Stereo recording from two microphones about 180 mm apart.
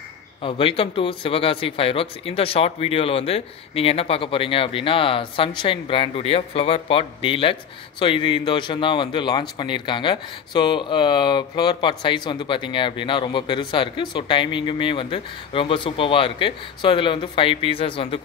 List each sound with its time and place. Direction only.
0.4 s a man's voice: 30° left (ahead or behind)